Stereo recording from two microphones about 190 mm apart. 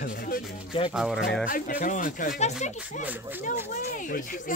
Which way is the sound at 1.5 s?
45° left (ahead or behind).